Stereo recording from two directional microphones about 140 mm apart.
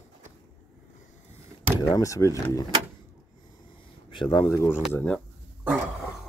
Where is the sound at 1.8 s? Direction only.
25° left (ahead or behind).